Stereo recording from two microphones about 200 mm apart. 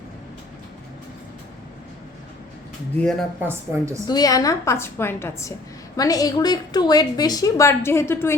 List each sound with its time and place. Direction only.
3.4 s a woman's voice: 15° right (ahead or behind)
4.0 s a woman's voice: 20° left (ahead or behind)